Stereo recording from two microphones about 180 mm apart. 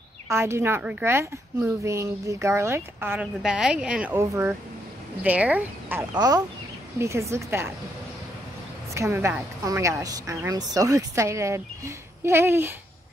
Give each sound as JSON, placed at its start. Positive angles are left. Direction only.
{"t": 0.3, "sound": "speech", "side_deg": -15}
{"t": 6.1, "sound": "speech", "side_deg": -20}
{"t": 8.9, "sound": "speech", "side_deg": -15}